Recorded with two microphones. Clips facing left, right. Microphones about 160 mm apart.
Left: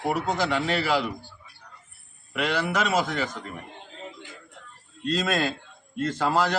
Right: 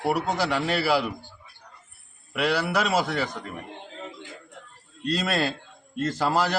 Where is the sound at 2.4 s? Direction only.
10° right (ahead or behind).